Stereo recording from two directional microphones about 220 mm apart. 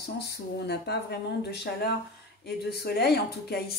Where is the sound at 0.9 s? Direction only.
50° left (ahead or behind).